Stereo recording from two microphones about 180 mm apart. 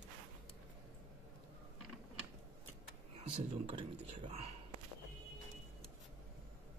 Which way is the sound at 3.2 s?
35° right (ahead or behind).